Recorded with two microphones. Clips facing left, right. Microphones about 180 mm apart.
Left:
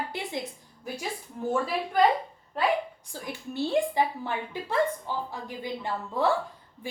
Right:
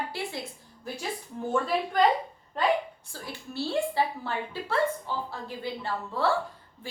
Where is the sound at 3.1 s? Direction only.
15° left (ahead or behind).